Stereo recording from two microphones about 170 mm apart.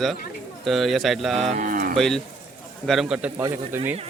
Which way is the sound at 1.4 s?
50° right (ahead or behind).